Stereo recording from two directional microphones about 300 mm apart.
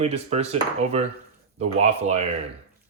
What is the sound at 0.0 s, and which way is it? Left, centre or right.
Speech, right.